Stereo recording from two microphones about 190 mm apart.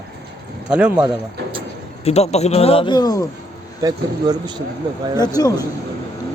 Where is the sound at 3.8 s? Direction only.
20° right (ahead or behind).